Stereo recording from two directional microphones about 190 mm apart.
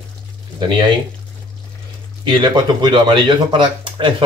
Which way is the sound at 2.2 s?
25° right (ahead or behind).